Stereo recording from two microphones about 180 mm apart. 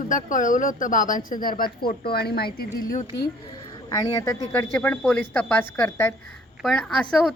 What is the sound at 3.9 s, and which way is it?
A woman's voice, 20° left (ahead or behind).